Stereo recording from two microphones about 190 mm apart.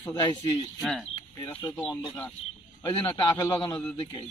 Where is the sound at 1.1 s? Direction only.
25° left (ahead or behind).